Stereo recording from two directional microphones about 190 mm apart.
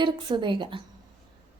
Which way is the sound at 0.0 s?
25° right (ahead or behind).